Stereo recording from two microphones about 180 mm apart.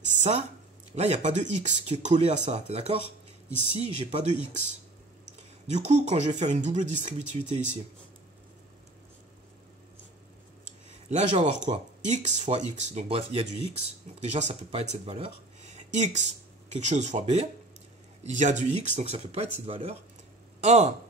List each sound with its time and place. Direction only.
0.1 s a sound: 40° right (ahead or behind)
0.9 s speech: 40° right (ahead or behind)
5.7 s speech: 40° right (ahead or behind)
11.1 s speech: 40° right (ahead or behind)